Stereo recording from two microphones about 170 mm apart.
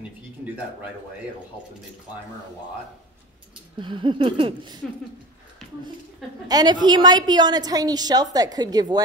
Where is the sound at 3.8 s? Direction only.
30° right (ahead or behind).